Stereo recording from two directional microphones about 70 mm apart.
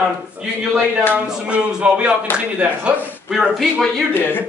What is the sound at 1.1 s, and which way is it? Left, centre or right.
Speech, centre.